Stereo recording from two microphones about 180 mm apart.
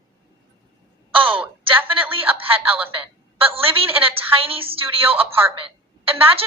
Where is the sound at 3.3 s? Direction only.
30° right (ahead or behind).